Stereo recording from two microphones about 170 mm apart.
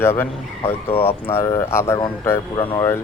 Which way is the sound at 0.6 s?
35° left (ahead or behind).